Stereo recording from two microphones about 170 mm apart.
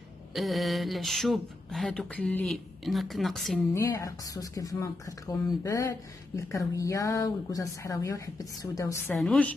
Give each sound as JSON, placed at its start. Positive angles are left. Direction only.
{"t": 0.3, "sound": "speech", "side_deg": 0}
{"t": 3.7, "sound": "speech", "side_deg": 15}
{"t": 9.1, "sound": "speech", "side_deg": 5}